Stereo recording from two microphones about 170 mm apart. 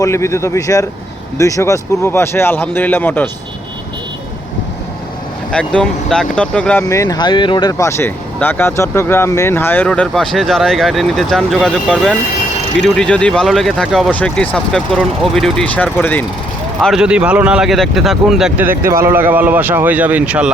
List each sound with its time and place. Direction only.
0.0 s speech: 15° left (ahead or behind)
5.5 s speech: 5° left (ahead or behind)
6.8 s speech: 20° left (ahead or behind)
16.8 s speech: 5° right (ahead or behind)